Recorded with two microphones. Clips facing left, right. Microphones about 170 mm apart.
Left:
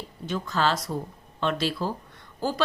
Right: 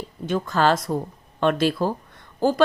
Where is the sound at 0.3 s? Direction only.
50° right (ahead or behind).